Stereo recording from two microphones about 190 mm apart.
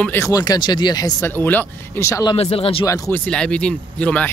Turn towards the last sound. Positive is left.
turn(degrees=5)  # may be behind; listen again after turning